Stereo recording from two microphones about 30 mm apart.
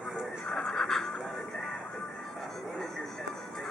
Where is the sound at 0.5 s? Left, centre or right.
Centre.